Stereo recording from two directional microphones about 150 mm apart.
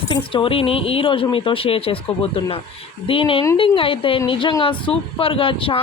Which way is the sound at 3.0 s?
35° left (ahead or behind).